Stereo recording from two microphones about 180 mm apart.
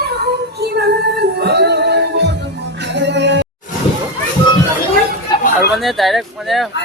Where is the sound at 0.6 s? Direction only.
65° right (ahead or behind).